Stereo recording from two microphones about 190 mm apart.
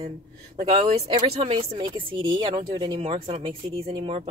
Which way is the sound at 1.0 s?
30° right (ahead or behind).